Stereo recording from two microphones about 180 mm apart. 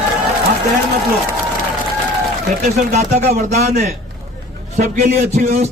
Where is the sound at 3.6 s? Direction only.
40° right (ahead or behind).